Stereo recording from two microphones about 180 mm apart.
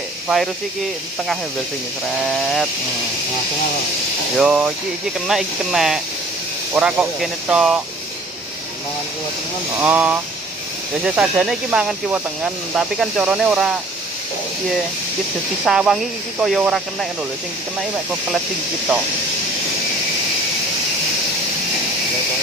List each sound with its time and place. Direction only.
2.3 s speech: centre (ahead or behind)
4.4 s speech: 5° right (ahead or behind)
9.8 s speech: 10° right (ahead or behind)
15.6 s speech: 5° right (ahead or behind)